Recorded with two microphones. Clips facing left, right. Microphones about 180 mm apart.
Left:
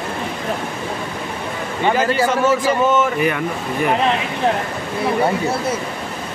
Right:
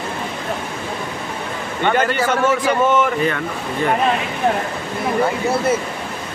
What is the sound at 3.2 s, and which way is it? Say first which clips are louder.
Speech: left 1 dB; 15° left (ahead or behind).